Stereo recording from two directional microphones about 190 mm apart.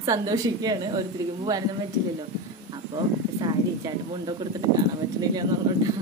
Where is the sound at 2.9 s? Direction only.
20° right (ahead or behind).